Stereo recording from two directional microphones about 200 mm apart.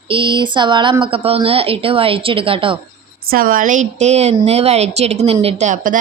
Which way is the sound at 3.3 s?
45° right (ahead or behind).